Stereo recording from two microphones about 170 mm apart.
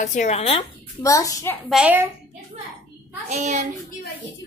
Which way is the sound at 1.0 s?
20° left (ahead or behind).